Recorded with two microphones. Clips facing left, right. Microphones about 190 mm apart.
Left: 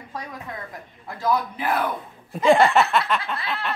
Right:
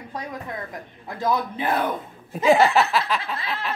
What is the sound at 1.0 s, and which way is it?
Speech, 20° right (ahead or behind).